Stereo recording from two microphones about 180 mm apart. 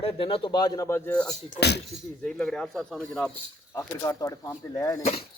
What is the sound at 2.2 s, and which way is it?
Speech, 5° left (ahead or behind).